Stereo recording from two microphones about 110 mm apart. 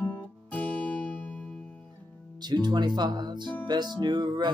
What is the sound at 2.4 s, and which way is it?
Speech, 40° right (ahead or behind).